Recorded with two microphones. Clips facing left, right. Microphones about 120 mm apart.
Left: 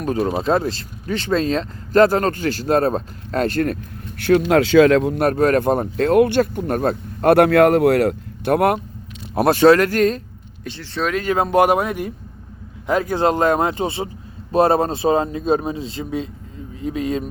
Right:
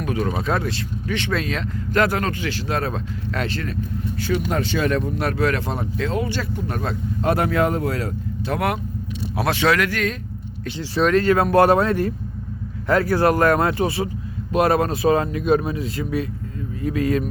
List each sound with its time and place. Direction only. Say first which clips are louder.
0.0 s speech: left 4 dB; 35° left (ahead or behind); by 3.8 s 50° left (ahead or behind)
4.2 s speech: left 9 dB; 70° left (ahead or behind); by 5.2 s 90° left
5.2 s speech: left 6 dB; 45° left (ahead or behind)
11.1 s speech: right 1 dB; 15° left (ahead or behind)